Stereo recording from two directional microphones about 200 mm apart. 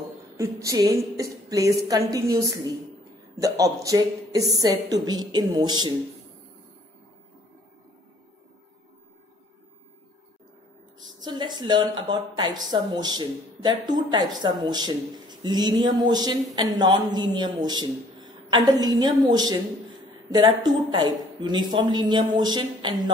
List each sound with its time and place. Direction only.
0.4 s a woman's voice: 15° right (ahead or behind)
11.1 s a woman's voice: 20° right (ahead or behind)